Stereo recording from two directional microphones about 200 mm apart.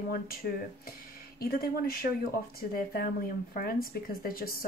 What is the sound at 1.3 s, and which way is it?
Speech, 50° left (ahead or behind).